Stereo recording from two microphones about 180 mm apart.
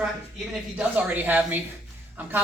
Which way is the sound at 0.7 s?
10° right (ahead or behind).